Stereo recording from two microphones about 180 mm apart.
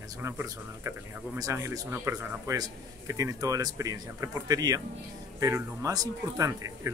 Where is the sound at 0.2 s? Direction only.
15° right (ahead or behind).